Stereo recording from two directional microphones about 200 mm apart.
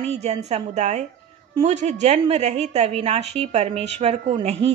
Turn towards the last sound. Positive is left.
turn(degrees=-30)  # may be behind; listen again after turning